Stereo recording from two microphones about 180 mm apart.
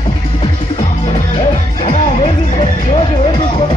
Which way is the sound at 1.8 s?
30° left (ahead or behind).